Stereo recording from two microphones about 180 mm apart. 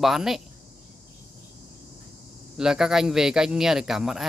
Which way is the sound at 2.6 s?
5° right (ahead or behind).